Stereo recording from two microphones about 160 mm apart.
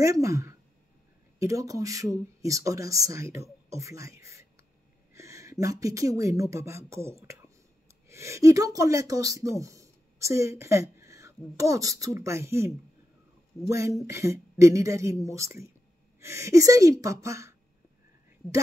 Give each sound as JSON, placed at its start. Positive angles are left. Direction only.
{"t": 0.0, "sound": "a woman's voice", "side_deg": -20}